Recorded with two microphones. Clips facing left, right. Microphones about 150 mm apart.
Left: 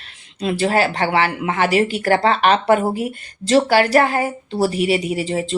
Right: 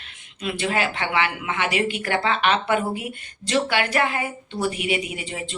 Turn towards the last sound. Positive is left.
turn(degrees=35)  # may be behind; listen again after turning